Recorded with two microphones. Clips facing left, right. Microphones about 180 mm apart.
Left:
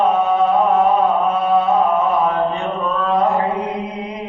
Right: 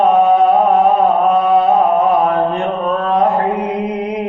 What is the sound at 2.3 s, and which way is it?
Mantra, 55° right (ahead or behind).